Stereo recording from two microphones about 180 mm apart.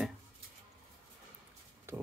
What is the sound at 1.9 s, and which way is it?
Pig, 15° right (ahead or behind).